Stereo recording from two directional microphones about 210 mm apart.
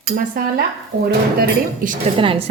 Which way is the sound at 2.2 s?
25° right (ahead or behind).